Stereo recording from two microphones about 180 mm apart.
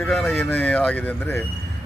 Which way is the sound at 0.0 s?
5° left (ahead or behind).